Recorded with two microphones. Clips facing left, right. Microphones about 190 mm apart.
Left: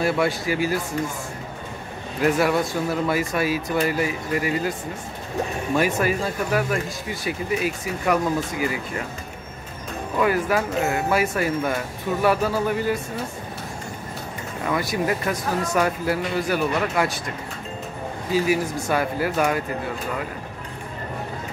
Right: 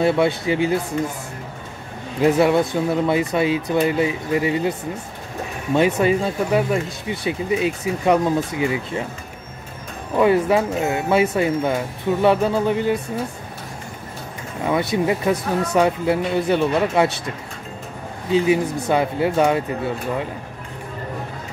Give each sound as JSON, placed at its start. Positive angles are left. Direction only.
{"t": 0.0, "sound": "speech", "side_deg": -25}
{"t": 2.1, "sound": "speech", "side_deg": -25}
{"t": 5.8, "sound": "speech", "side_deg": -20}
{"t": 10.1, "sound": "speech", "side_deg": -25}
{"t": 14.7, "sound": "speech", "side_deg": -25}
{"t": 18.9, "sound": "speech", "side_deg": -25}